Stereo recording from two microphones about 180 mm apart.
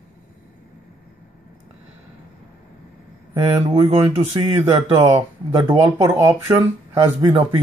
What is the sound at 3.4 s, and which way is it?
Speech, 25° right (ahead or behind).